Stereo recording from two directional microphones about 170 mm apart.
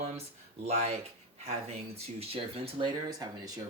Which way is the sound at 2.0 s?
35° right (ahead or behind).